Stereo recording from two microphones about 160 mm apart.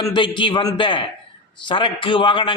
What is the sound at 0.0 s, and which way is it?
A man's voice, 30° left (ahead or behind).